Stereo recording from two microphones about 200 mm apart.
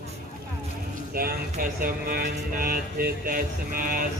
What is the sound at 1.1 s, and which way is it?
Speech, 50° right (ahead or behind).